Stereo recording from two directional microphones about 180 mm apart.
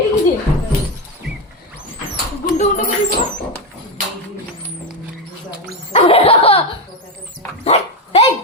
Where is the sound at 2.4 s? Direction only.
45° left (ahead or behind).